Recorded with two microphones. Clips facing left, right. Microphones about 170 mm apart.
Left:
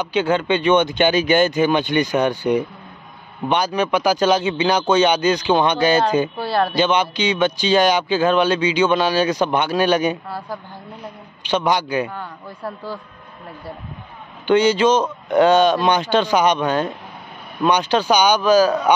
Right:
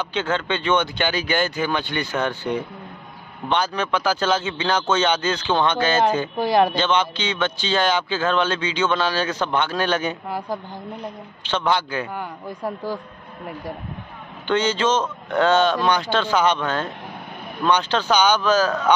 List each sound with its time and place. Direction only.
0.0 s speech: 10° left (ahead or behind)
6.3 s speech: 15° right (ahead or behind)
6.7 s speech: 10° left (ahead or behind)
12.1 s speech: 15° right (ahead or behind)
14.5 s speech: 10° left (ahead or behind)